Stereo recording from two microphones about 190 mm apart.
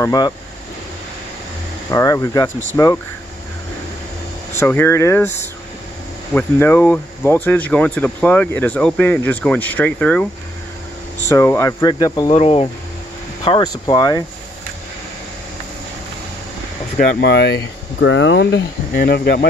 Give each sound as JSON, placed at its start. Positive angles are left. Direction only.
{"t": 0.0, "sound": "speech", "side_deg": 20}
{"t": 1.9, "sound": "speech", "side_deg": 15}
{"t": 4.6, "sound": "speech", "side_deg": 10}
{"t": 11.2, "sound": "speech", "side_deg": 15}
{"t": 12.3, "sound": "speech", "side_deg": 30}
{"t": 17.0, "sound": "speech", "side_deg": 55}